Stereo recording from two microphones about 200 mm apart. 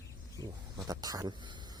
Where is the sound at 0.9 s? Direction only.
20° right (ahead or behind).